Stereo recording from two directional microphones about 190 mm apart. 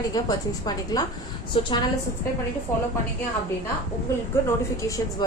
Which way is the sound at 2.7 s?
15° left (ahead or behind).